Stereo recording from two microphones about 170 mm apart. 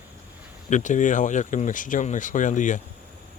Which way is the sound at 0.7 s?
45° left (ahead or behind).